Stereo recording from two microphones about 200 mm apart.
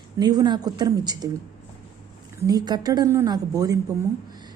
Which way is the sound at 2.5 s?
20° right (ahead or behind).